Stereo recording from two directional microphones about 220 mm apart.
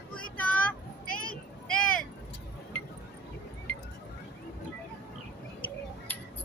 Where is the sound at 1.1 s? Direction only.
40° left (ahead or behind).